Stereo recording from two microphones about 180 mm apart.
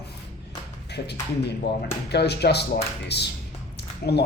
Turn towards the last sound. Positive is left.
turn(degrees=60)  # may be behind; listen again after turning